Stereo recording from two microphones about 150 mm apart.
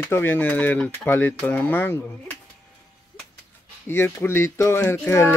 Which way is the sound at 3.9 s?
15° left (ahead or behind).